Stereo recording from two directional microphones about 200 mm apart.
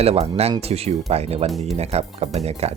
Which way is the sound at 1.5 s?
Centre (ahead or behind).